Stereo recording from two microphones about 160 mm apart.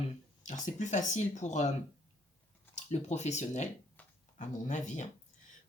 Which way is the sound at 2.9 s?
45° left (ahead or behind).